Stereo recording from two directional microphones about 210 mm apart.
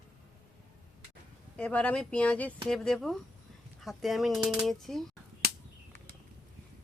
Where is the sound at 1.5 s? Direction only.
5° left (ahead or behind).